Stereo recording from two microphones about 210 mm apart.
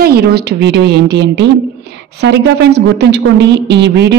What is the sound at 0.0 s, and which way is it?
A woman's voice, 45° right (ahead or behind).